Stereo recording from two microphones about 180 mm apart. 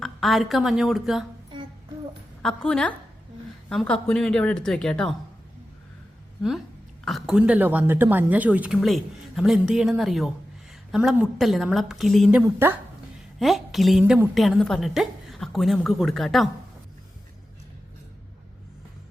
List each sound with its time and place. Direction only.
0.0 s a woman's voice: centre (ahead or behind)
2.4 s a woman's voice: 5° left (ahead or behind)
7.0 s a woman's voice: centre (ahead or behind)
13.4 s a woman's voice: centre (ahead or behind)
14.0 s speech: 10° right (ahead or behind)
14.3 s a woman's voice: centre (ahead or behind)